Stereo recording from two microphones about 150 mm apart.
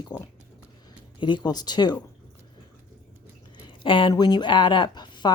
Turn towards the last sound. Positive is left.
turn(degrees=30)  # may be behind; listen again after turning